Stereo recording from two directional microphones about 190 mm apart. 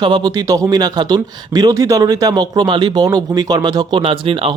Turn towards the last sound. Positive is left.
turn(degrees=-25)  # may be behind; listen again after turning